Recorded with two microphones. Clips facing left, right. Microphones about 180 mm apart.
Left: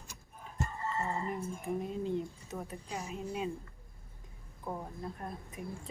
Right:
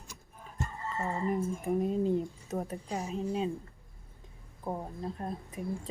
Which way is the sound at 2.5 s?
40° right (ahead or behind).